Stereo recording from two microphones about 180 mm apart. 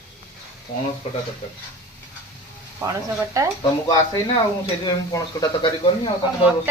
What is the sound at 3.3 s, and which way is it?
Speech, 20° right (ahead or behind).